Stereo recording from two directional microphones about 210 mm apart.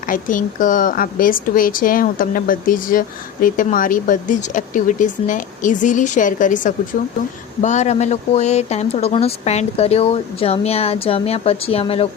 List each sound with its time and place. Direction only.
0.1 s speech: 40° left (ahead or behind)